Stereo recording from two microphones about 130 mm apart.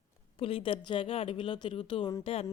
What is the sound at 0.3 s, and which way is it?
A woman's voice, 45° left (ahead or behind).